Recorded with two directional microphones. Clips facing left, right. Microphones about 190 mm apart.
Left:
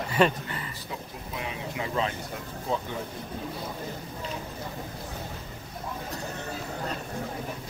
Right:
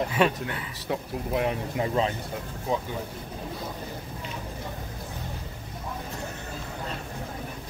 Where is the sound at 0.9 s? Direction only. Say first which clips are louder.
Right 13 dB; 55° right (ahead or behind).